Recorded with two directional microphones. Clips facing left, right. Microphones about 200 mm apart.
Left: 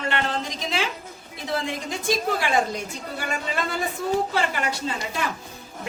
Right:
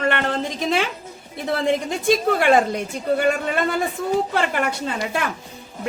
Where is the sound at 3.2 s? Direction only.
60° right (ahead or behind).